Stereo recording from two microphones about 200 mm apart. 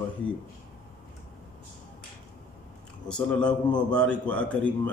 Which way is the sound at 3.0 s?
5° left (ahead or behind).